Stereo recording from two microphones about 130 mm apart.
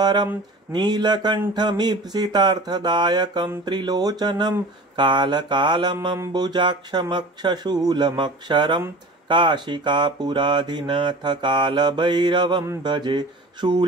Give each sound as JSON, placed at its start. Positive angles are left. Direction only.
{"t": 0.0, "sound": "speech", "side_deg": -35}